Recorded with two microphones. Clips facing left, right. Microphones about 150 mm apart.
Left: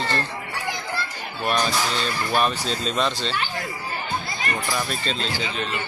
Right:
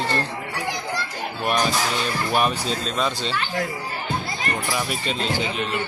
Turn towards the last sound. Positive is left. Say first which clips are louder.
# right 2 dB
turn(degrees=-15)  # may be behind; listen again after turning